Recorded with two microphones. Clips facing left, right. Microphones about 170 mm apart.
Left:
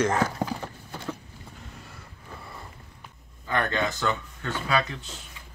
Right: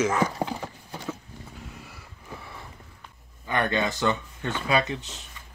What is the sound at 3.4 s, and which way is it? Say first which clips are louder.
Speech: right 1 dB; 15° right (ahead or behind).